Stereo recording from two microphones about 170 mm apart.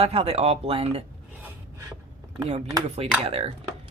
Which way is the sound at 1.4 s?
15° right (ahead or behind).